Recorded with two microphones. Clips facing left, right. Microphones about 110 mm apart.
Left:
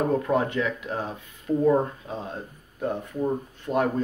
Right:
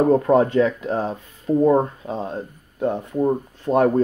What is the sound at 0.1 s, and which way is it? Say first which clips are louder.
Speech: right 8 dB; 35° right (ahead or behind).